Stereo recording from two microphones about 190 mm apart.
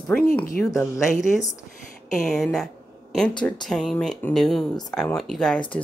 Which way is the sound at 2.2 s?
Centre (ahead or behind).